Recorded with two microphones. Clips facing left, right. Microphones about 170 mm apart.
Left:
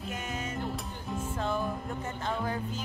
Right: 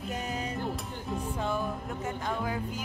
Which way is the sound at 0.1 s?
35° right (ahead or behind).